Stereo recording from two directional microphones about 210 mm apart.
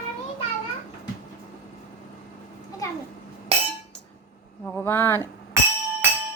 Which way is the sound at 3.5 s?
30° right (ahead or behind).